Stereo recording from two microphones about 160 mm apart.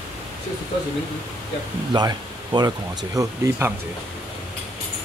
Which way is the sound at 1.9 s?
25° right (ahead or behind).